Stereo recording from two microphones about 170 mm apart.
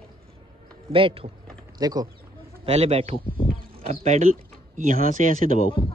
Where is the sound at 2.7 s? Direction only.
40° right (ahead or behind).